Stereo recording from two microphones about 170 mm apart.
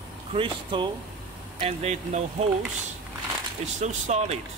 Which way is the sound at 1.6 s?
40° right (ahead or behind).